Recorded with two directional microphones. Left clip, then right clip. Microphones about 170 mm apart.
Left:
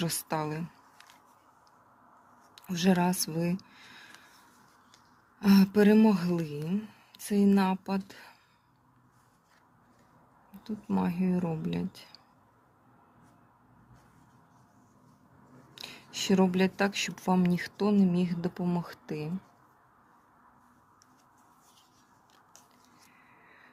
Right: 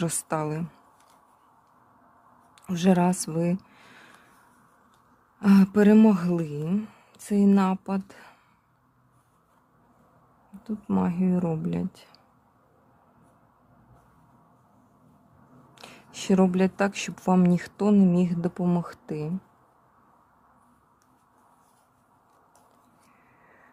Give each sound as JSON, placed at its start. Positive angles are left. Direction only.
{"t": 0.0, "sound": "speech", "side_deg": -25}
{"t": 2.6, "sound": "speech", "side_deg": -30}
{"t": 5.4, "sound": "speech", "side_deg": -25}
{"t": 10.6, "sound": "speech", "side_deg": -25}
{"t": 15.7, "sound": "speech", "side_deg": -25}